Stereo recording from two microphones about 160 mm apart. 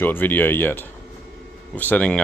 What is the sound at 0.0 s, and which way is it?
Speech, 10° left (ahead or behind).